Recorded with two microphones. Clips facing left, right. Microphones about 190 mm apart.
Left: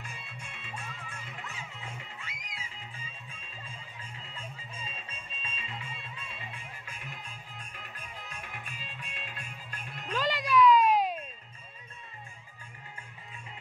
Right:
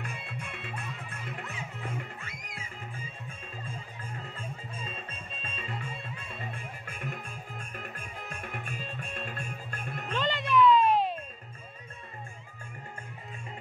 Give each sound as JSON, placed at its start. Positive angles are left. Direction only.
{"t": 0.0, "sound": "music", "side_deg": -60}
{"t": 10.1, "sound": "music", "side_deg": 10}